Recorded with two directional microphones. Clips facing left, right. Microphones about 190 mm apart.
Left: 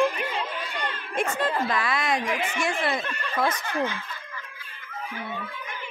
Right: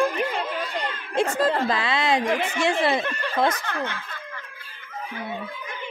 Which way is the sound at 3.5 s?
65° right (ahead or behind).